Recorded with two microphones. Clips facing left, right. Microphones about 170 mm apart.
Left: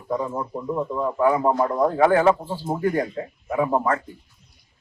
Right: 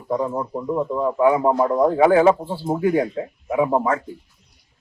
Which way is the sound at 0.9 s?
10° right (ahead or behind).